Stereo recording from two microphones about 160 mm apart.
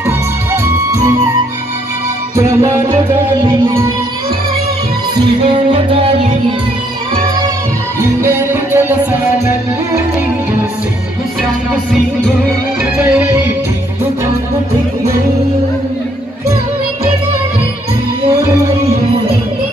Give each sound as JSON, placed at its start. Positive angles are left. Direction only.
{"t": 0.0, "sound": "music", "side_deg": -15}
{"t": 2.3, "sound": "music", "side_deg": -20}
{"t": 5.4, "sound": "music", "side_deg": -35}
{"t": 8.2, "sound": "music", "side_deg": -15}
{"t": 13.0, "sound": "music", "side_deg": -10}